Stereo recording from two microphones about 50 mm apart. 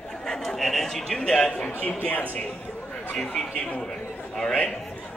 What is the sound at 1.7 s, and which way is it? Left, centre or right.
Speech, left.